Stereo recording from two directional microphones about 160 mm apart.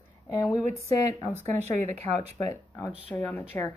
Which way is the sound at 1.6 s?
45° right (ahead or behind).